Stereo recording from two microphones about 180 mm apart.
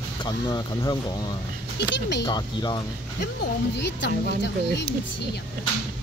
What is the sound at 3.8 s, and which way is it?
Speech, 75° left (ahead or behind).